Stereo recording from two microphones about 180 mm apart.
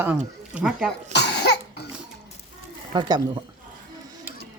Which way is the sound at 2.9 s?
25° right (ahead or behind).